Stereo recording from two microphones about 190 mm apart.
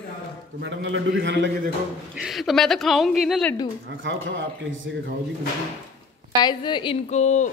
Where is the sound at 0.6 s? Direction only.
70° right (ahead or behind).